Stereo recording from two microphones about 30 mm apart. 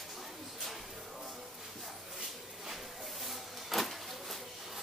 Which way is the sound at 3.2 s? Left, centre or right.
Centre.